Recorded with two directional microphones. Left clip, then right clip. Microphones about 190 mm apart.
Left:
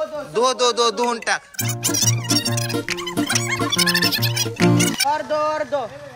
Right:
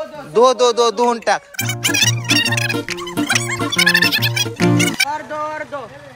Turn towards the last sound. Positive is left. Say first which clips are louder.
# left 3 dB
turn(degrees=55)  # may be behind; listen again after turning